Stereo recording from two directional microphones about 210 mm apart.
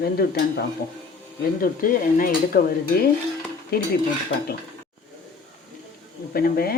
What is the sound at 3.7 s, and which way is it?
Stir, 45° left (ahead or behind).